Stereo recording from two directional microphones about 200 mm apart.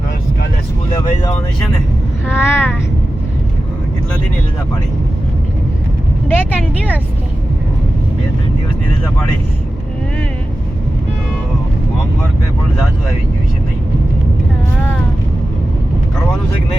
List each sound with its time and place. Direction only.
2.2 s speech: 10° left (ahead or behind)
6.2 s speech: 10° left (ahead or behind)